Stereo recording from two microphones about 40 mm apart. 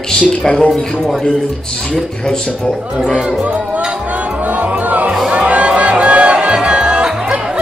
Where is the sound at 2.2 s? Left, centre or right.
Centre.